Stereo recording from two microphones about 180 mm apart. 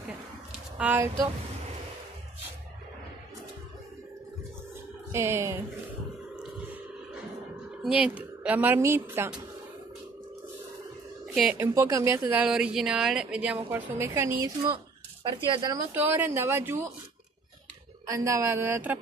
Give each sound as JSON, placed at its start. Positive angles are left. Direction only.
{"t": 0.7, "sound": "speech", "side_deg": -10}
{"t": 5.1, "sound": "speech", "side_deg": -15}
{"t": 6.3, "sound": "music", "side_deg": -5}
{"t": 7.8, "sound": "speech", "side_deg": -5}
{"t": 11.5, "sound": "speech", "side_deg": -10}
{"t": 13.7, "sound": "speech", "side_deg": -15}
{"t": 15.2, "sound": "speech", "side_deg": -25}
{"t": 15.9, "sound": "speech", "side_deg": -10}
{"t": 18.1, "sound": "speech", "side_deg": -20}